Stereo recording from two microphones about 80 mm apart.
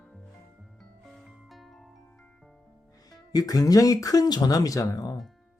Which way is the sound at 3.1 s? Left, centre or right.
Left.